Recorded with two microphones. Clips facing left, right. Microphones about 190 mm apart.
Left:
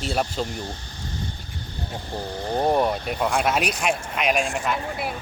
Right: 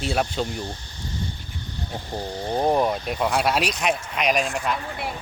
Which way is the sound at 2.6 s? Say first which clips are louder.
Even; centre (ahead or behind).